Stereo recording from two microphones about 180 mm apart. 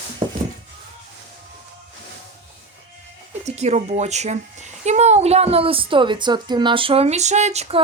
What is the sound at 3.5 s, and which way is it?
A woman's voice, 40° right (ahead or behind).